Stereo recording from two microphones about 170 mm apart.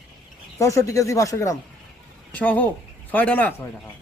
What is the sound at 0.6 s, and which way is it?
A man's voice, 20° left (ahead or behind).